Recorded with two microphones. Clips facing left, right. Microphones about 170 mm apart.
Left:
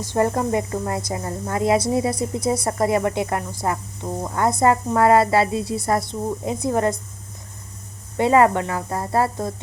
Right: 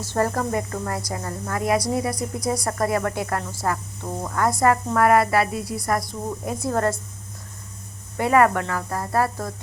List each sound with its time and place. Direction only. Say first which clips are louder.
0.0 s a woman's voice: left 3 dB; 15° left (ahead or behind)
8.2 s a woman's voice: left 2 dB; 25° left (ahead or behind)